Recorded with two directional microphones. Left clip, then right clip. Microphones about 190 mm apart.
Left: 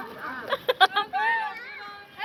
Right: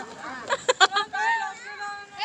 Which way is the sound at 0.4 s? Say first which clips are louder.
Right 1 dB; 20° right (ahead or behind).